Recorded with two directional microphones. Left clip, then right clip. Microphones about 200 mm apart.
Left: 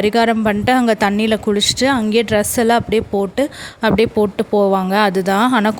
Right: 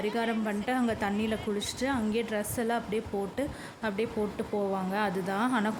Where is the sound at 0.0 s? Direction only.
45° left (ahead or behind).